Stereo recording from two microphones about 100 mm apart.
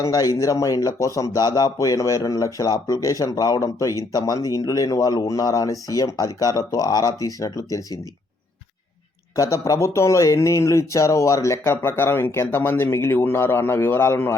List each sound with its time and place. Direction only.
0.0 s speech: 35° left (ahead or behind)
9.3 s speech: 35° left (ahead or behind)